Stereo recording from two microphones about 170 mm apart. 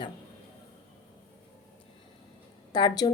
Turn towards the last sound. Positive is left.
turn(degrees=25)  # may be behind; listen again after turning